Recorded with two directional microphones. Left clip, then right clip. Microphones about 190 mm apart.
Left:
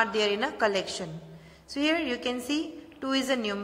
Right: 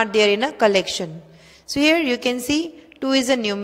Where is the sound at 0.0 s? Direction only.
50° right (ahead or behind).